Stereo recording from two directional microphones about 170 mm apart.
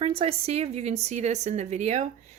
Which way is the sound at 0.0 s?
35° right (ahead or behind).